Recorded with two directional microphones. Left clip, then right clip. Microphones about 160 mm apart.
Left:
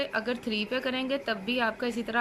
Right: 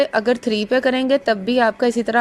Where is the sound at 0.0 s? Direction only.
40° right (ahead or behind).